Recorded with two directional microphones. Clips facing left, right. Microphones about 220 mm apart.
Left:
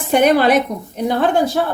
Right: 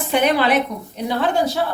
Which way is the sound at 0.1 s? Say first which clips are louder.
Left 5 dB; 45° left (ahead or behind).